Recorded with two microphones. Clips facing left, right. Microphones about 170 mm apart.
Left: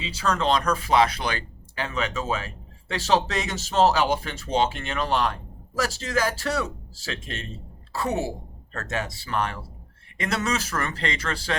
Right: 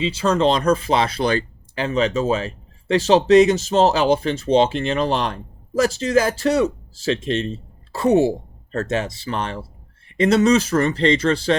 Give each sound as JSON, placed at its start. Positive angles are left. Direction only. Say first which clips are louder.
{"t": 0.0, "sound": "speech", "louder": "right 8 dB", "side_deg": -25}